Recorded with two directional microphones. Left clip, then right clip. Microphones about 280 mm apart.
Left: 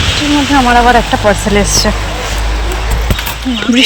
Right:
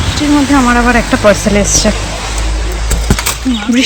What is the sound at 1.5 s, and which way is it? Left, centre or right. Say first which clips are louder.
Speech: even; centre.